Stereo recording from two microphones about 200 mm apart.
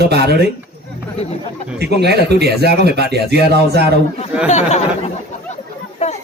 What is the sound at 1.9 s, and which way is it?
Speech, 55° right (ahead or behind).